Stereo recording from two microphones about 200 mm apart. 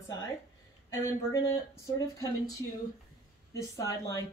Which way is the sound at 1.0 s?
15° left (ahead or behind).